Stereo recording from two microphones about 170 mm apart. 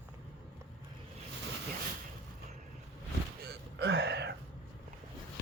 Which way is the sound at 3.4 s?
75° right (ahead or behind).